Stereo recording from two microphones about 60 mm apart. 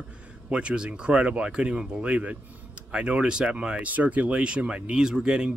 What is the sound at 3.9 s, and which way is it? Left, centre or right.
Speech, right.